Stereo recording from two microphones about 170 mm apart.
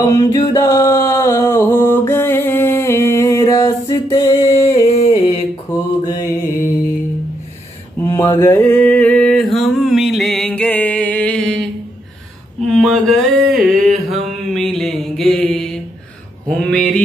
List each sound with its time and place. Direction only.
0.1 s a sound: 20° left (ahead or behind)
4.8 s music: 40° left (ahead or behind)
5.7 s mantra: 20° left (ahead or behind)
8.0 s mantra: 15° left (ahead or behind)
14.5 s a sound: centre (ahead or behind)
16.4 s mantra: 5° left (ahead or behind)